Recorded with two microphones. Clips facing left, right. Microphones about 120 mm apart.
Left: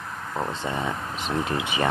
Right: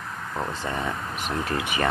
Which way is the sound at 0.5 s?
15° left (ahead or behind).